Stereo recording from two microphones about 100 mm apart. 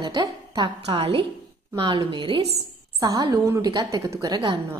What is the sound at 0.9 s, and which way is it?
Speech, 70° right (ahead or behind).